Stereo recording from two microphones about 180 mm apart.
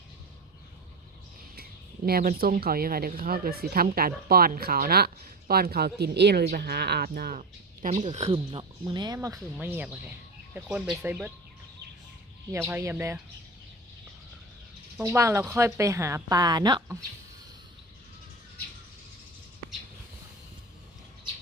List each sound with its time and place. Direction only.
2.0 s speech: 55° right (ahead or behind)
8.0 s speech: 35° right (ahead or behind)
8.8 s speech: 20° right (ahead or behind)
12.5 s speech: 15° right (ahead or behind)
15.0 s speech: 15° right (ahead or behind)